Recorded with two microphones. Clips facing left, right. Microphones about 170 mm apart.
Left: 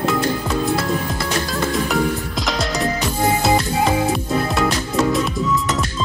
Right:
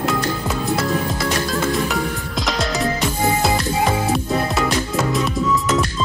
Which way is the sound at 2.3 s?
Centre (ahead or behind).